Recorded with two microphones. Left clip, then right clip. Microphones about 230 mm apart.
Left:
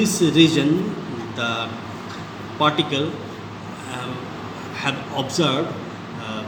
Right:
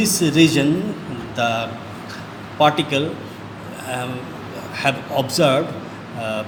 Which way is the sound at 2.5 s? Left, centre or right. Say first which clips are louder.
Right 3 dB; right.